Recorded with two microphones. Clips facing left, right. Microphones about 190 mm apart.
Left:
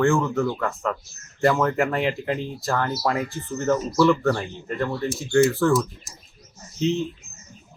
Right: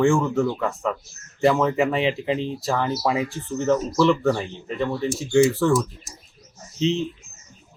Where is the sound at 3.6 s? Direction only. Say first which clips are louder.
Even; 5° left (ahead or behind).